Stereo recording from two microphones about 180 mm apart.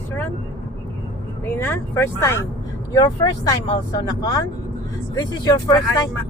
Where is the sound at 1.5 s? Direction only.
10° left (ahead or behind).